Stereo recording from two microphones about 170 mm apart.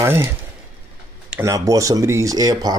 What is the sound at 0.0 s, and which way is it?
Speech, 15° right (ahead or behind).